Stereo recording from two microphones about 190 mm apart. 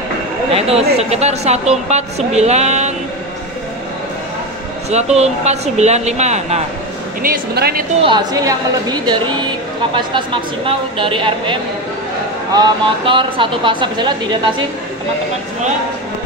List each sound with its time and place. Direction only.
0.6 s a sound: 30° right (ahead or behind)
0.9 s speech: 35° right (ahead or behind)
4.8 s speech: 35° right (ahead or behind)
7.2 s speech: 55° right (ahead or behind)
8.0 s a woman's voice: 25° right (ahead or behind)
12.5 s a woman's voice: 25° right (ahead or behind)